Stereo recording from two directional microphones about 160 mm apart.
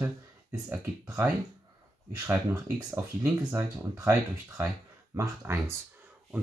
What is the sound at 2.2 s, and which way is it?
Speech, 20° right (ahead or behind).